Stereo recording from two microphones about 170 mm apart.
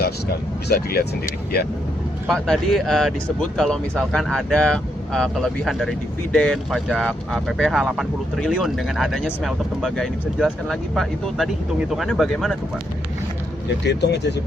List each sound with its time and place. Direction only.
0.7 s speech: 65° left (ahead or behind)
2.2 s speech: centre (ahead or behind)
13.8 s speech: 90° left